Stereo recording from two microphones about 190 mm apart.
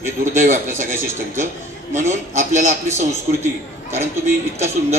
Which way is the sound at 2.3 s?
40° right (ahead or behind).